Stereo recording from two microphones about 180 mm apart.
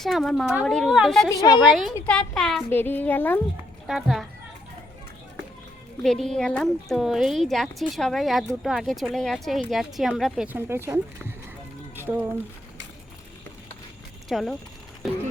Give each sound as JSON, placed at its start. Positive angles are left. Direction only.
{"t": 0.0, "sound": "speech", "side_deg": 0}
{"t": 1.4, "sound": "a woman's voice", "side_deg": 20}
{"t": 2.0, "sound": "speech", "side_deg": 5}
{"t": 3.8, "sound": "speech", "side_deg": 0}
{"t": 6.0, "sound": "speech", "side_deg": 0}
{"t": 14.3, "sound": "speech", "side_deg": 0}